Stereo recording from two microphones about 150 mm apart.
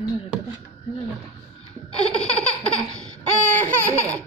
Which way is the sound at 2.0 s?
5° left (ahead or behind).